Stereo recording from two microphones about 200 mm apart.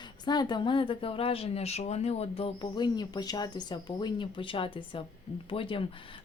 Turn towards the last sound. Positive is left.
turn(degrees=25)  # may be behind; listen again after turning